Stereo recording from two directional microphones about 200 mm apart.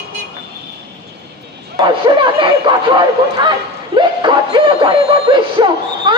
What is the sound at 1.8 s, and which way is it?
Speech, 25° right (ahead or behind).